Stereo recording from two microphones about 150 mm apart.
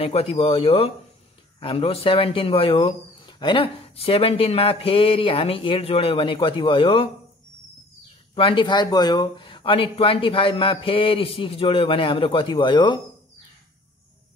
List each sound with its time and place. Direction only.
0.0 s speech: 40° left (ahead or behind)
8.4 s speech: 35° left (ahead or behind)